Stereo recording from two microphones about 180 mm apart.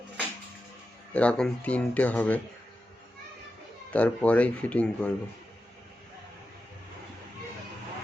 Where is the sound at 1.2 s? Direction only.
5° left (ahead or behind).